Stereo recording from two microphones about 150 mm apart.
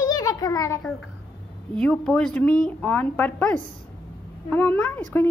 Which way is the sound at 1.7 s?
5° left (ahead or behind).